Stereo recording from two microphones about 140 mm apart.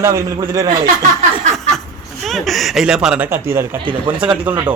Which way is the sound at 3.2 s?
15° right (ahead or behind).